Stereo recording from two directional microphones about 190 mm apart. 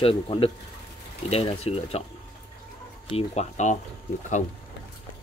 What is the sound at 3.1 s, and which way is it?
Speech, 35° left (ahead or behind).